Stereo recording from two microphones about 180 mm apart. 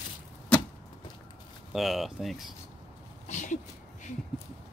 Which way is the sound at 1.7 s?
Centre (ahead or behind).